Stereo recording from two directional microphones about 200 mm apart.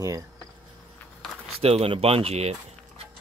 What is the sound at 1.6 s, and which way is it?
Speech, 30° right (ahead or behind).